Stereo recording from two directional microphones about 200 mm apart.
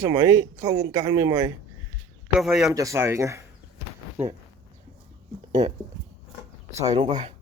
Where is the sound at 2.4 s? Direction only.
Centre (ahead or behind).